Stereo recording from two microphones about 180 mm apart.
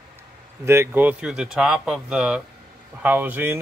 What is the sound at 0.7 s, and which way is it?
Speech, 15° right (ahead or behind).